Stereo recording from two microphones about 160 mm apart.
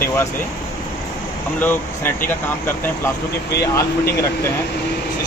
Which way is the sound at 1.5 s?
10° left (ahead or behind).